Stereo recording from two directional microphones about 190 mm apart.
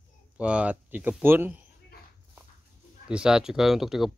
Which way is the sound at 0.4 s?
5° right (ahead or behind).